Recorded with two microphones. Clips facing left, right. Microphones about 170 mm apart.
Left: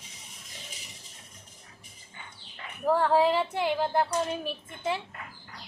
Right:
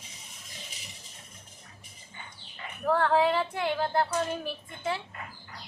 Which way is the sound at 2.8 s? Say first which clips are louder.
Left 1 dB; 10° left (ahead or behind).